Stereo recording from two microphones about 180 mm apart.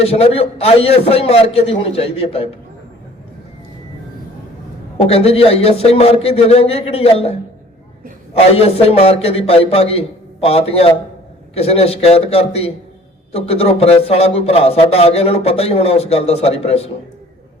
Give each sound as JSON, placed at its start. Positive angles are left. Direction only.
{"t": 0.0, "sound": "speech", "side_deg": 35}
{"t": 4.9, "sound": "speech", "side_deg": 35}
{"t": 8.4, "sound": "speech", "side_deg": 35}